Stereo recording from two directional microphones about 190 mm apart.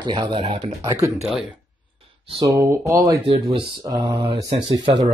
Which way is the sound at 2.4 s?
15° right (ahead or behind).